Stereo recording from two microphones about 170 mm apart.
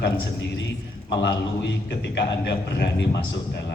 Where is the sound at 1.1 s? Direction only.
90° left.